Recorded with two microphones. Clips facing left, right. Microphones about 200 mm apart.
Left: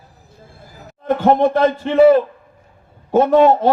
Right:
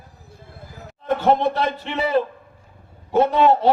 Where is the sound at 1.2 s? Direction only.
45° left (ahead or behind).